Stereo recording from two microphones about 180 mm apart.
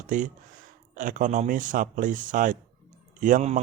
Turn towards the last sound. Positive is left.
turn(degrees=-45)  # may be behind; listen again after turning